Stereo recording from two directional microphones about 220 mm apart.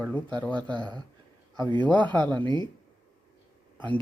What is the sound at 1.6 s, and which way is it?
Speech, 20° right (ahead or behind).